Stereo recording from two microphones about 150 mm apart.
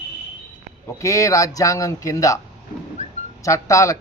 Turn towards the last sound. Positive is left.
turn(degrees=20)  # may be behind; listen again after turning